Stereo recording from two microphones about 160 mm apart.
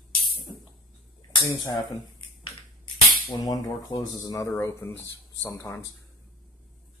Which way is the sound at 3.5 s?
25° left (ahead or behind).